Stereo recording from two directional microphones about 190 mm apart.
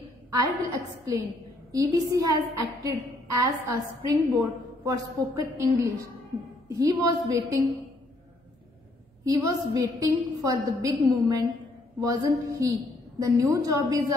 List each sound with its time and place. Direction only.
0.3 s a woman's voice: 20° right (ahead or behind)
9.2 s a woman's voice: 15° right (ahead or behind)